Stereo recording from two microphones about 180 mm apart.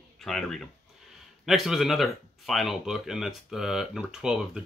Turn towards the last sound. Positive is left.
turn(degrees=-5)  # may be behind; listen again after turning